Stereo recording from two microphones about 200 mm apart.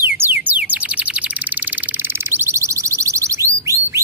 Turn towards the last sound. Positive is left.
turn(degrees=-15)  # may be behind; listen again after turning